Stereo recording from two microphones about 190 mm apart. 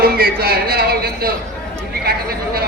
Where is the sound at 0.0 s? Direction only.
50° right (ahead or behind).